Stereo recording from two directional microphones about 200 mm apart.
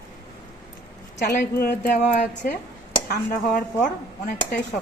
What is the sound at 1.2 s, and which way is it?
A woman's voice, 45° left (ahead or behind).